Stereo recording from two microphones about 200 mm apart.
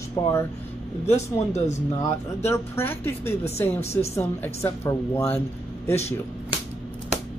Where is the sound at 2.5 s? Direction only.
10° left (ahead or behind).